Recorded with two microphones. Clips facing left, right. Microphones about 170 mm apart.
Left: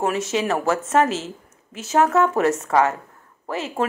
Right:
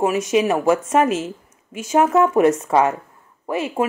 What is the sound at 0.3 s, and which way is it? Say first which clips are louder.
A woman's voice: right 5 dB; 15° right (ahead or behind).